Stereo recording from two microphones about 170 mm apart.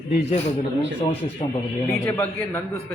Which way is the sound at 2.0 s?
15° left (ahead or behind).